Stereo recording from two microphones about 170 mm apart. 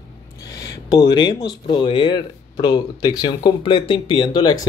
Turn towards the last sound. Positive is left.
turn(degrees=25)  # may be behind; listen again after turning